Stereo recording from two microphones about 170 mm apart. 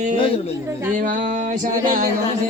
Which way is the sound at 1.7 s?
50° right (ahead or behind).